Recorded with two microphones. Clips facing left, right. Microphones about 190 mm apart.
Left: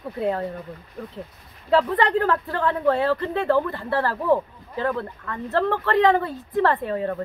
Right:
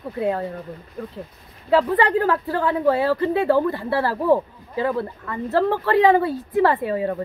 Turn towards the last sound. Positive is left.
turn(degrees=-5)  # may be behind; listen again after turning